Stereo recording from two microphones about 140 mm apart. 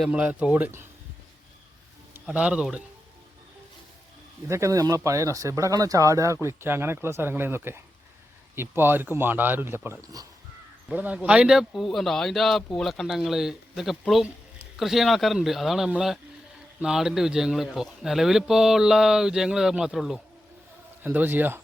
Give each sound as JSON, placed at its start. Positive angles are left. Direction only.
{"t": 0.0, "sound": "speech", "side_deg": -10}
{"t": 2.1, "sound": "a man's voice", "side_deg": -10}
{"t": 4.4, "sound": "speech", "side_deg": -20}
{"t": 10.8, "sound": "a man's voice", "side_deg": -10}
{"t": 21.0, "sound": "speech", "side_deg": -15}